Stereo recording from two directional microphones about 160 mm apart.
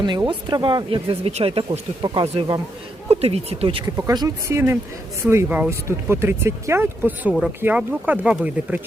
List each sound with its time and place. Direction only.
0.0 s speech: 30° right (ahead or behind); by 8.8 s 10° right (ahead or behind)